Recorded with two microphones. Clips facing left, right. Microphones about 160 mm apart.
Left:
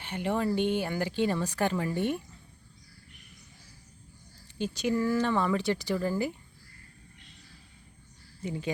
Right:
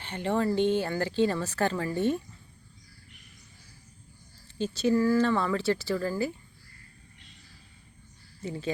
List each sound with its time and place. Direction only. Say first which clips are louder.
0.0 s speech: right 2 dB; 10° left (ahead or behind)
4.5 s speech: right 4 dB; 15° left (ahead or behind)
8.4 s speech: right 1 dB; 15° left (ahead or behind)